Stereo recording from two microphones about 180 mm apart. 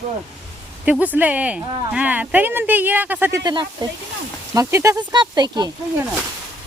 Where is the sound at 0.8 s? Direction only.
10° right (ahead or behind).